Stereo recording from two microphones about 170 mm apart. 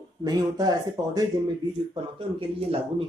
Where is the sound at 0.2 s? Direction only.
25° right (ahead or behind).